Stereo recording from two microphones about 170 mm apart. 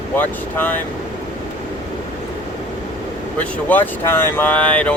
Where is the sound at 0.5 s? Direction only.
10° left (ahead or behind).